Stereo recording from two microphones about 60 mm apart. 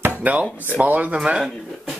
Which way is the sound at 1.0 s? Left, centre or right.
Centre.